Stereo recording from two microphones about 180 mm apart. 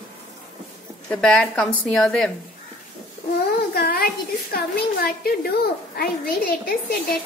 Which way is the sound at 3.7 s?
60° left (ahead or behind).